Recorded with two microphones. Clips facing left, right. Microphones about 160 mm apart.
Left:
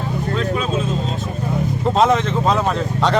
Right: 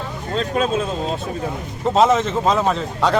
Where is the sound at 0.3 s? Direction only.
40° right (ahead or behind).